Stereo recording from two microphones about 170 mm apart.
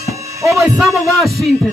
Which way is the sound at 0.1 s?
20° right (ahead or behind).